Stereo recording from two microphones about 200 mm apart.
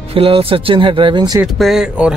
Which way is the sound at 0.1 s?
25° right (ahead or behind).